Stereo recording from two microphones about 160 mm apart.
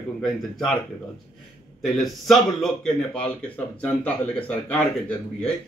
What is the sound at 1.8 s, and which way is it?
Speech, centre (ahead or behind).